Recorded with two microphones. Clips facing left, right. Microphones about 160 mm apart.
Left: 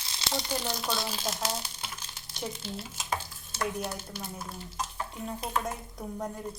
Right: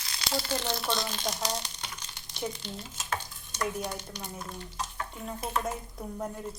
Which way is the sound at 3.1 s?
5° left (ahead or behind).